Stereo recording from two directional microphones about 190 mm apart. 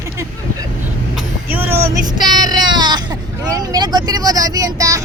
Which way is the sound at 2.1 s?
20° right (ahead or behind).